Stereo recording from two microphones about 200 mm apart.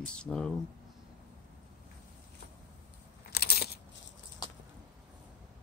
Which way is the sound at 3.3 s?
50° left (ahead or behind).